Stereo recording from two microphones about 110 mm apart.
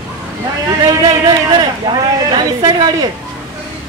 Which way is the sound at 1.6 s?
40° right (ahead or behind).